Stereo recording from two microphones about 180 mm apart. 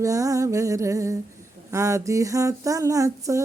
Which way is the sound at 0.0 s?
20° right (ahead or behind).